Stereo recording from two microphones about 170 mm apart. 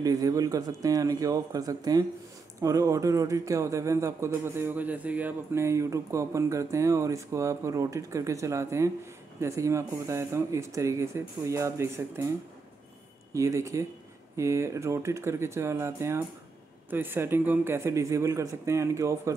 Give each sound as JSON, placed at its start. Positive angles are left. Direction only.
{"t": 0.0, "sound": "a man's voice", "side_deg": -20}